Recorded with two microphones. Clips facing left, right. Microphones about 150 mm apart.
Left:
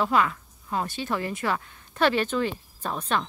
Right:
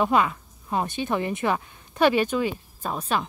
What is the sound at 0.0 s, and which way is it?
A woman's voice, 20° right (ahead or behind).